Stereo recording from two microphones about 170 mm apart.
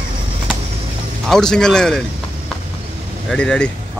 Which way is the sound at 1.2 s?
5° left (ahead or behind).